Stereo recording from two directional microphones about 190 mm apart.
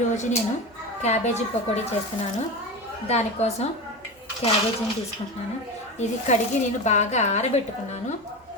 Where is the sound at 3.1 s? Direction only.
35° left (ahead or behind).